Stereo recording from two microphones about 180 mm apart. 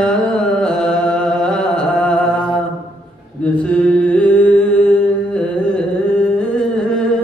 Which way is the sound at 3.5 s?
5° left (ahead or behind).